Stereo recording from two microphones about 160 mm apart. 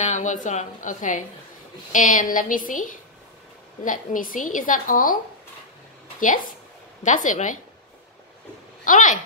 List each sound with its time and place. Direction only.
0.0 s a woman's voice: 50° left (ahead or behind)
6.1 s a woman's voice: 55° left (ahead or behind)
8.8 s a woman's voice: 55° left (ahead or behind)